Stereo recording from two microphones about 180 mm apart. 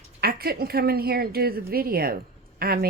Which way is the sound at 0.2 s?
60° right (ahead or behind).